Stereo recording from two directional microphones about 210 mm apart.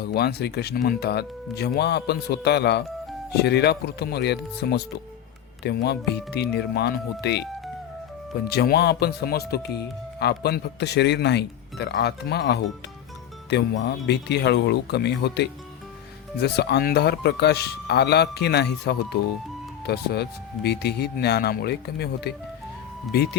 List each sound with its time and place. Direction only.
0.0 s speech: 50° left (ahead or behind)
8.4 s speech: 50° left (ahead or behind)